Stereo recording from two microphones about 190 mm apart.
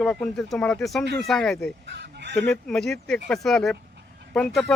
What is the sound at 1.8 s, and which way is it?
Chicken, 65° right (ahead or behind).